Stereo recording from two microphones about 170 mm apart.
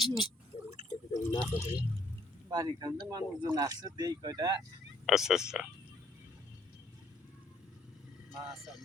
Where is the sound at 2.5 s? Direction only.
20° right (ahead or behind).